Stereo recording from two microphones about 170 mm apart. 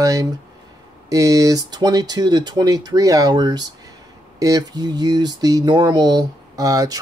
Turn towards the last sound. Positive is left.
turn(degrees=-20)  # may be behind; listen again after turning